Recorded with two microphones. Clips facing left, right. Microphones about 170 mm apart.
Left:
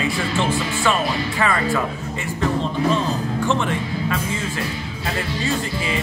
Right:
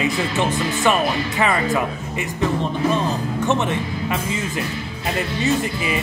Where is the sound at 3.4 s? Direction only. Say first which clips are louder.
Right 2 dB; 20° right (ahead or behind).